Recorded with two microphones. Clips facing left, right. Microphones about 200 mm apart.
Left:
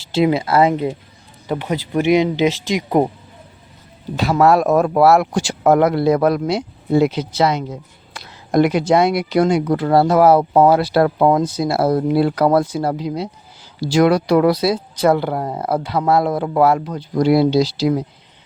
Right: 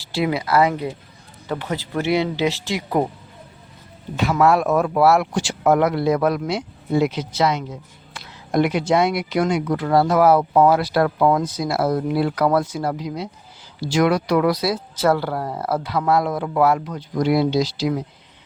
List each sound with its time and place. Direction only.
0.0 s speech: 25° left (ahead or behind)
4.2 s speech: 35° left (ahead or behind)